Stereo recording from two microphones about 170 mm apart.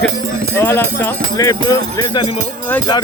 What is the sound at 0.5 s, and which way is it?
Speech, 15° left (ahead or behind).